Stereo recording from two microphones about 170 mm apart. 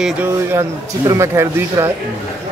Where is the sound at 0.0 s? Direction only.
10° right (ahead or behind).